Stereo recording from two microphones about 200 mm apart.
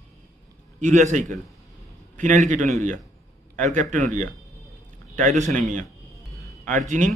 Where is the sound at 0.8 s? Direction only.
40° right (ahead or behind).